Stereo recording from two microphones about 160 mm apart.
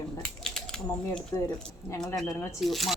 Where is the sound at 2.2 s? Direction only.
20° left (ahead or behind).